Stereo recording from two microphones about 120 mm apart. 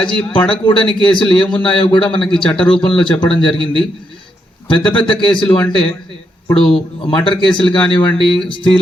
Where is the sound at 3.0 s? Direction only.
40° left (ahead or behind).